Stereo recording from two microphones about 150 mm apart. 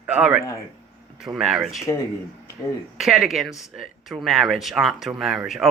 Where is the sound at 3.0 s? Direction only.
Centre (ahead or behind).